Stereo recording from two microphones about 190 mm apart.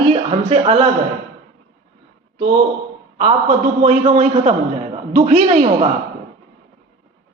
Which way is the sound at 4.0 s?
30° right (ahead or behind).